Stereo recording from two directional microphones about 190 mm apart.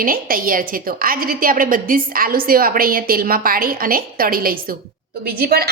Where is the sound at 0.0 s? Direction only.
50° right (ahead or behind).